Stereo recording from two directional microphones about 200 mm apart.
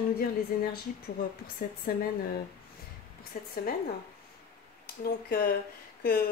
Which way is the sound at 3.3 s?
45° left (ahead or behind).